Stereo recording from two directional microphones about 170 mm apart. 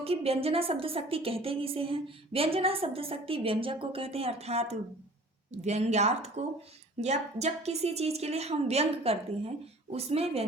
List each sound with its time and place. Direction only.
0.0 s a woman's voice: 35° right (ahead or behind)